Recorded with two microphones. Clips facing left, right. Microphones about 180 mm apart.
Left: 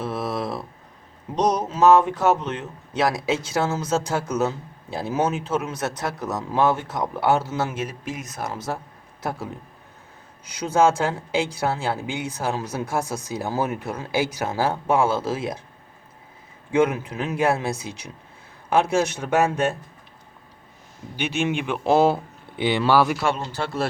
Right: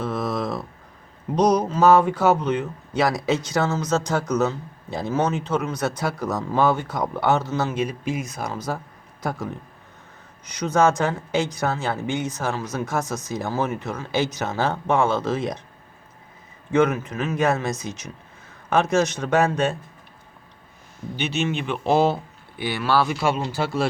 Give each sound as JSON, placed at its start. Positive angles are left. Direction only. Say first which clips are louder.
{"t": 0.0, "sound": "a sound", "louder": "right 1 dB", "side_deg": 5}
{"t": 1.4, "sound": "speech", "louder": "right 2 dB", "side_deg": 0}
{"t": 10.4, "sound": "speech", "louder": "even", "side_deg": 10}
{"t": 16.7, "sound": "speech", "louder": "right 1 dB", "side_deg": 10}
{"t": 21.2, "sound": "speech", "louder": "left 1 dB", "side_deg": 10}
{"t": 22.5, "sound": "speech", "louder": "left 3 dB", "side_deg": 20}
{"t": 23.2, "sound": "speech", "louder": "right 2 dB", "side_deg": -10}